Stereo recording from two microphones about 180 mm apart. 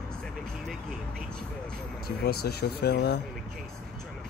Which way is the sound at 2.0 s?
60° left (ahead or behind).